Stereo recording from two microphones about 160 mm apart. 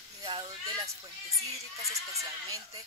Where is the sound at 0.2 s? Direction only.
30° right (ahead or behind).